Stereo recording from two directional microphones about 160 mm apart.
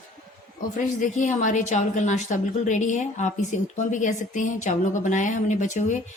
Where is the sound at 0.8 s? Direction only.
55° left (ahead or behind).